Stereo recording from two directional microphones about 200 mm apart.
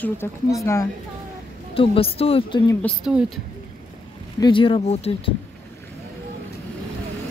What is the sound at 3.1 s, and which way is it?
Speech, 5° right (ahead or behind).